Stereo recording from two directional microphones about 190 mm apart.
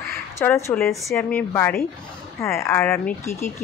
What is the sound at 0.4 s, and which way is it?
Speech, 10° left (ahead or behind).